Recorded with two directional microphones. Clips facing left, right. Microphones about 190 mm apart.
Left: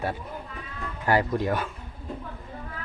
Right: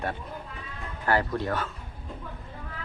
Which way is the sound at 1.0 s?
15° left (ahead or behind).